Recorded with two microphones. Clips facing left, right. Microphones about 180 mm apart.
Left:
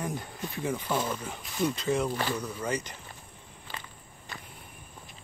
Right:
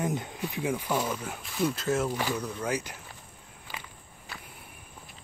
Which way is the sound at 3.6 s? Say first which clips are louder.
Even; 5° right (ahead or behind).